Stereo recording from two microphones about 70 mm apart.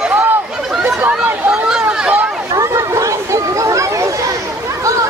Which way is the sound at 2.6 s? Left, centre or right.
Right.